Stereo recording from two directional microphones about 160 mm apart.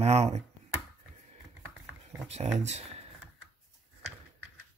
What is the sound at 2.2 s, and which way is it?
Speech, 40° right (ahead or behind).